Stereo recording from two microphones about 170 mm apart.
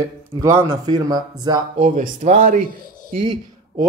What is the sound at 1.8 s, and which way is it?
Speech, 45° right (ahead or behind).